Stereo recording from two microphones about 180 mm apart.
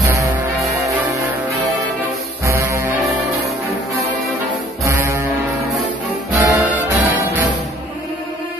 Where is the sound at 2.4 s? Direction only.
15° right (ahead or behind).